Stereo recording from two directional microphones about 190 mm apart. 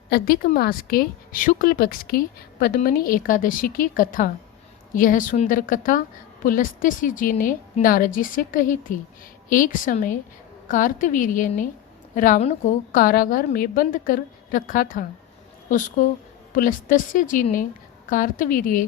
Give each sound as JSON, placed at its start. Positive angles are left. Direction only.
{"t": 0.1, "sound": "a woman's voice", "side_deg": 50}
{"t": 16.5, "sound": "a woman's voice", "side_deg": 45}